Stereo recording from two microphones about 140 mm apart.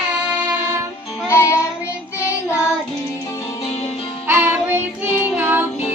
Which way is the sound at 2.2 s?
20° left (ahead or behind).